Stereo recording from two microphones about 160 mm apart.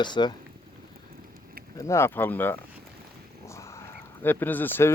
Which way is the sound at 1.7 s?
20° left (ahead or behind).